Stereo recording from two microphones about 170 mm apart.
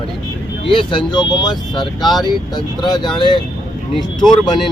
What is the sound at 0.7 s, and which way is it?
Speech, 30° left (ahead or behind).